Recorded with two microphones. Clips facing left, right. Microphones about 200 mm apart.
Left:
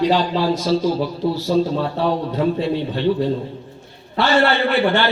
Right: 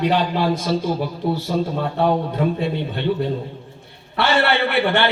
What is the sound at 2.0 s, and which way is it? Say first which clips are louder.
A man's voice: right 3 dB; 55° right (ahead or behind).